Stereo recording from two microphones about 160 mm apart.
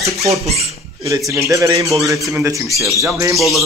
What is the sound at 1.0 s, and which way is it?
Speech, 20° right (ahead or behind).